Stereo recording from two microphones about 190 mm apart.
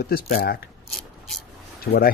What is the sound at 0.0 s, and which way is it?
Speech, 55° left (ahead or behind).